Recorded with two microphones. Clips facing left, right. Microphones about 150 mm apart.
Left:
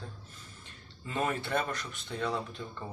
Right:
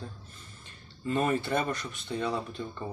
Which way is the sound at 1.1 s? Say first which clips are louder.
Right 4 dB; 5° right (ahead or behind).